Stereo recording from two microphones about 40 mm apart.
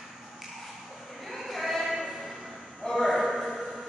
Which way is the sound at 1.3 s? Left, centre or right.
Centre.